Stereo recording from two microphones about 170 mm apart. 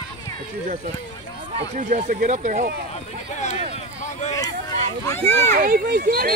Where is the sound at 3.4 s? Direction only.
45° left (ahead or behind).